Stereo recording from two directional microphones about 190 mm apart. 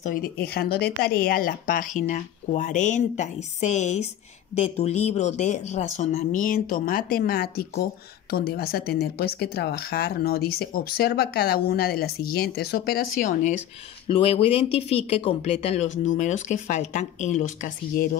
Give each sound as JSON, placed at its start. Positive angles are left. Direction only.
{"t": 0.0, "sound": "speech", "side_deg": 50}
{"t": 14.0, "sound": "speech", "side_deg": 30}